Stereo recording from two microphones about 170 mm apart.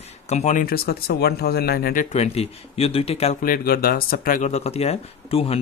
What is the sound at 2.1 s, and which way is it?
Speech, 35° left (ahead or behind).